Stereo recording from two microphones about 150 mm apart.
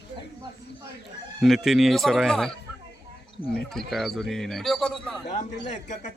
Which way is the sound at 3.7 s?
Centre (ahead or behind).